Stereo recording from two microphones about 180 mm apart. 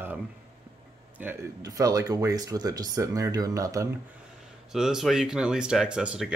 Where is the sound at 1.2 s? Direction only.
15° right (ahead or behind).